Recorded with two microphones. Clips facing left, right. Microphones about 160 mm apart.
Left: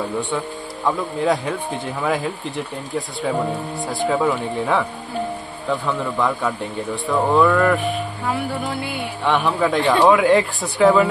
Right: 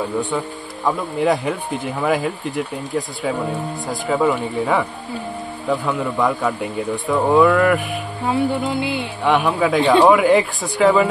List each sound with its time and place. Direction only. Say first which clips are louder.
0.8 s a man's voice: right 1 dB; centre (ahead or behind)
3.8 s a man's voice: right 1 dB; centre (ahead or behind)
8.3 s music: right 6 dB; 20° right (ahead or behind)
9.3 s a man's voice: right 2 dB; centre (ahead or behind)